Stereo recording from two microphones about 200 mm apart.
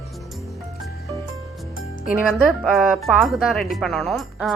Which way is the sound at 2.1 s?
Centre (ahead or behind).